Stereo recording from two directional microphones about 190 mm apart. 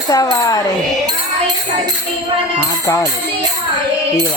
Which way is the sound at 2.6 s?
15° left (ahead or behind).